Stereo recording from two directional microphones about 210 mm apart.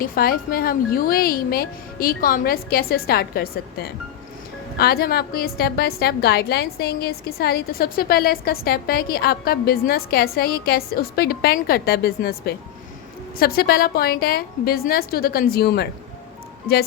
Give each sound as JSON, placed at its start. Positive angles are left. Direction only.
{"t": 0.0, "sound": "a woman's voice", "side_deg": 45}